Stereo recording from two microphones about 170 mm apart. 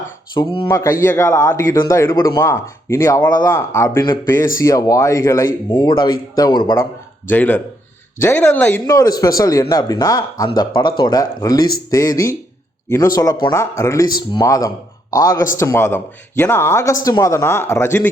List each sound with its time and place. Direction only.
0.3 s speech: 30° left (ahead or behind)
0.7 s a man's voice: 15° left (ahead or behind)
5.7 s speech: 30° left (ahead or behind)
7.3 s a man's voice: 10° left (ahead or behind)